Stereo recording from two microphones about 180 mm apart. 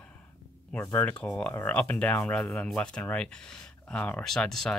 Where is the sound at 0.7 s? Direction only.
10° left (ahead or behind).